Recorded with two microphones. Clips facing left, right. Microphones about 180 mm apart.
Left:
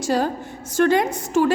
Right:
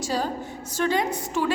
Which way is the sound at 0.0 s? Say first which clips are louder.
Left 5 dB; 55° left (ahead or behind).